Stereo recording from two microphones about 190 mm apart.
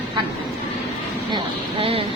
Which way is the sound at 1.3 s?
30° right (ahead or behind).